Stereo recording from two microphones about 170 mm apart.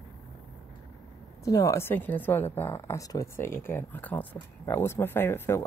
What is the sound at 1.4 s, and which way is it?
Speech, 20° left (ahead or behind).